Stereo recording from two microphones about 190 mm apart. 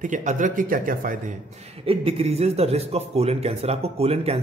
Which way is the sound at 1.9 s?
30° right (ahead or behind).